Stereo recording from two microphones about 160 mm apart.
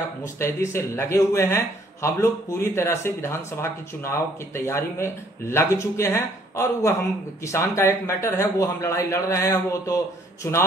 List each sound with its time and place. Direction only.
0.4 s a man's voice: 15° left (ahead or behind)